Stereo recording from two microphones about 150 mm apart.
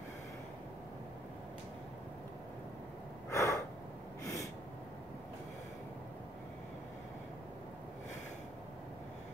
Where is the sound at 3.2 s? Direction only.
20° left (ahead or behind).